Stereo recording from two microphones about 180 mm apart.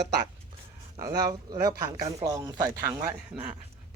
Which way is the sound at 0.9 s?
20° right (ahead or behind).